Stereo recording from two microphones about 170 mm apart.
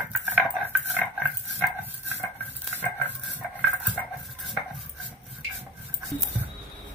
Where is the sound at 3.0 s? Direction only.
10° right (ahead or behind).